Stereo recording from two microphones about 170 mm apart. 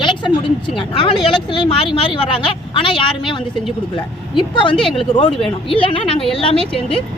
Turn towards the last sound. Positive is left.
turn(degrees=30)  # may be behind; listen again after turning